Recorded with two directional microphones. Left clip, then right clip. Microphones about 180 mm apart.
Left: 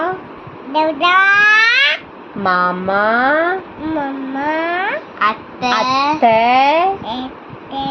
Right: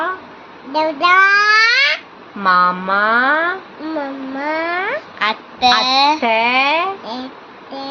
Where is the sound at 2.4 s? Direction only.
5° right (ahead or behind).